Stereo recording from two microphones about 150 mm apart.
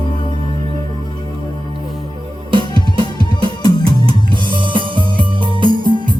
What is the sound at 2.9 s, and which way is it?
Music, 35° right (ahead or behind).